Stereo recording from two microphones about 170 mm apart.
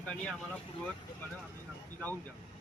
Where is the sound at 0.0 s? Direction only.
5° left (ahead or behind).